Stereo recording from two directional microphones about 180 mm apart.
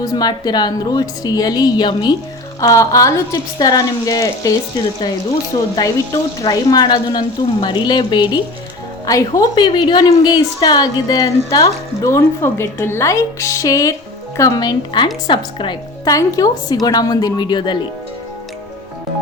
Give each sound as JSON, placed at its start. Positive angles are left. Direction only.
{"t": 0.0, "sound": "a woman's voice", "side_deg": 20}
{"t": 5.5, "sound": "a woman's voice", "side_deg": 30}